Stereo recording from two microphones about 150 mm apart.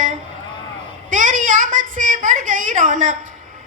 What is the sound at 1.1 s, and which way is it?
A woman's voice, 60° right (ahead or behind).